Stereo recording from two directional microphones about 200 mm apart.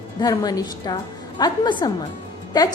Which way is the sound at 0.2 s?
20° left (ahead or behind).